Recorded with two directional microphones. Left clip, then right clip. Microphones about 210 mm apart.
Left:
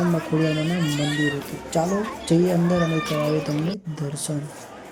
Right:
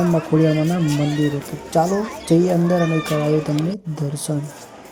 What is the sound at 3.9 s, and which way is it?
Speech, 15° right (ahead or behind).